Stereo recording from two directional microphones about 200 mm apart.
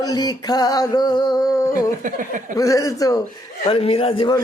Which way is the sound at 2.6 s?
15° left (ahead or behind).